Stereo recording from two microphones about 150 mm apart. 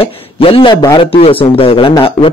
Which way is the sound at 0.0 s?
35° left (ahead or behind).